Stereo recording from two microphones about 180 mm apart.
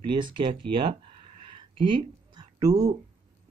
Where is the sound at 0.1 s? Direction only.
25° right (ahead or behind).